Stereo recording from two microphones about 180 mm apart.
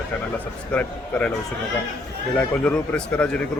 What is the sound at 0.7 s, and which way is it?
Speech, 10° left (ahead or behind).